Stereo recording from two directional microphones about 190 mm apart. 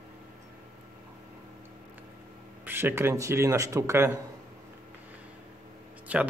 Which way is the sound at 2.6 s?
10° right (ahead or behind).